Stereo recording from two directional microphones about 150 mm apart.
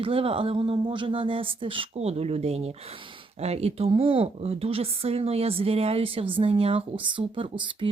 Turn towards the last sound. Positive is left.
turn(degrees=-35)  # may be behind; listen again after turning